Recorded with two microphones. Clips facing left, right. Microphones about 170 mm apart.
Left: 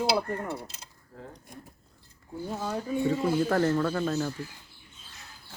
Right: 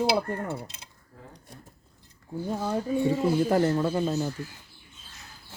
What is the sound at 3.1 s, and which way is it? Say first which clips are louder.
Speech: right 2 dB; 15° right (ahead or behind).